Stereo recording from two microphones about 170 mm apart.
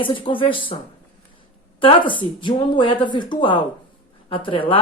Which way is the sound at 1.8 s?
30° left (ahead or behind).